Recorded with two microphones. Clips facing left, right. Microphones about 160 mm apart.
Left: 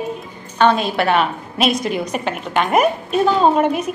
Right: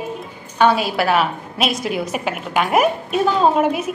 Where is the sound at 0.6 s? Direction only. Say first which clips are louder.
Left 1 dB; 5° right (ahead or behind).